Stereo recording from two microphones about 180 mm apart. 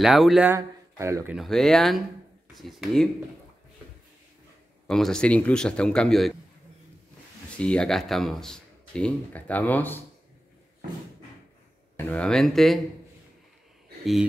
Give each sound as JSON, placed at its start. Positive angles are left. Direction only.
{"t": 0.0, "sound": "speech", "side_deg": 0}
{"t": 0.5, "sound": "speech", "side_deg": -15}
{"t": 1.3, "sound": "speech", "side_deg": 0}
{"t": 4.8, "sound": "speech", "side_deg": 5}
{"t": 7.5, "sound": "speech", "side_deg": 5}
{"t": 12.1, "sound": "speech", "side_deg": 5}